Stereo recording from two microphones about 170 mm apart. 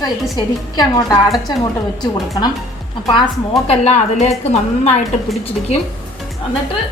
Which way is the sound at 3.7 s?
40° left (ahead or behind).